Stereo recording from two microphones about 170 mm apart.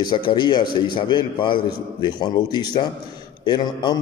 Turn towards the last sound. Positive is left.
turn(degrees=25)  # may be behind; listen again after turning